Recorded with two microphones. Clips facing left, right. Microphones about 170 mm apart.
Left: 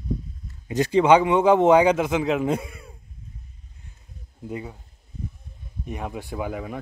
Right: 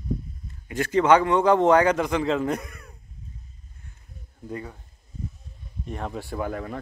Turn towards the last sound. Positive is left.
turn(degrees=10)  # may be behind; listen again after turning